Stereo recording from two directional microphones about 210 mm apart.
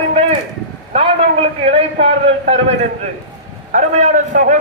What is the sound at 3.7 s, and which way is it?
Speech, 35° right (ahead or behind).